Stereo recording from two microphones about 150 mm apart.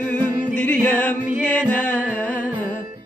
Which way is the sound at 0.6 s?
10° left (ahead or behind).